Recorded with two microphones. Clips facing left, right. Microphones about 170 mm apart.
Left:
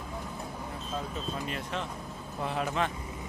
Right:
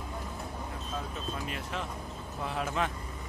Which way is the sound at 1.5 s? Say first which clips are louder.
Left 2 dB; 5° right (ahead or behind).